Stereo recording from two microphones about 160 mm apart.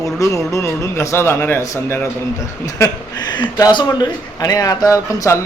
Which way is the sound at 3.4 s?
25° left (ahead or behind).